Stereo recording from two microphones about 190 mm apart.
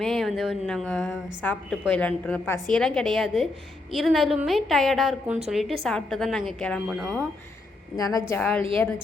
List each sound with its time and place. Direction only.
0.0 s a woman's voice: centre (ahead or behind)
7.9 s a woman's voice: 20° left (ahead or behind)
8.3 s a woman's voice: 5° left (ahead or behind)